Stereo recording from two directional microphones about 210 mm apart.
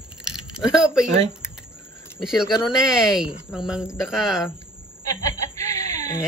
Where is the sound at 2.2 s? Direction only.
Centre (ahead or behind).